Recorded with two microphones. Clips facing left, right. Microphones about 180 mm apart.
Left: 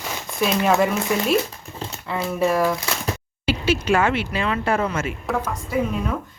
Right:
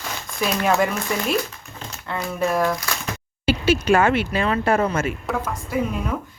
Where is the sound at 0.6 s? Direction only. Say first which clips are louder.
Left 1 dB; centre (ahead or behind).